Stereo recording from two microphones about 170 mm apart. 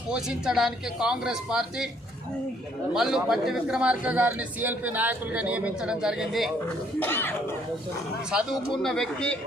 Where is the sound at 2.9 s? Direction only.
5° right (ahead or behind).